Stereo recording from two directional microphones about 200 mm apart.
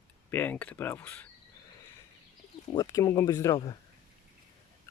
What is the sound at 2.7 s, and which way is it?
Speech, 20° left (ahead or behind).